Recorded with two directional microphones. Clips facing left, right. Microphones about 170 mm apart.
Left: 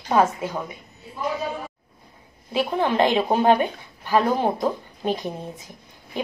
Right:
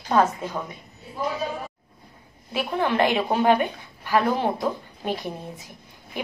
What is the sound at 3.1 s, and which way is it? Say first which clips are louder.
A woman's voice: left 2 dB; 15° left (ahead or behind).